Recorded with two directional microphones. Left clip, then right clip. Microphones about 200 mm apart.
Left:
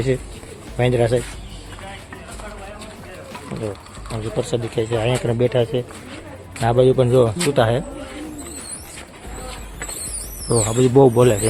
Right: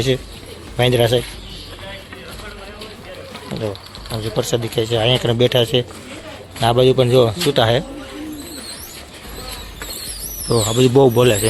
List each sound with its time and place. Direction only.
0.8 s speech: centre (ahead or behind)
3.5 s speech: 5° right (ahead or behind)
6.6 s speech: 5° left (ahead or behind)
10.5 s speech: centre (ahead or behind)